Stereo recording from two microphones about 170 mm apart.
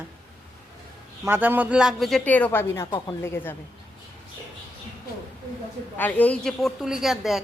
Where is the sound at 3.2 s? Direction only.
15° left (ahead or behind).